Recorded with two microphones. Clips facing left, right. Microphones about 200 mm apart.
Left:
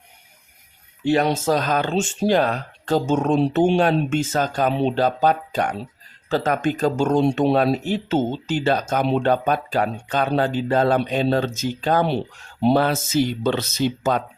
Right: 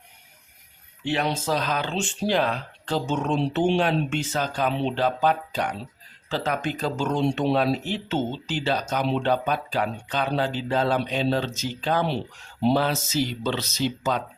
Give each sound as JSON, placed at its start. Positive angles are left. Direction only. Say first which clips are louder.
{"t": 1.0, "sound": "speech", "louder": "left 7 dB", "side_deg": 45}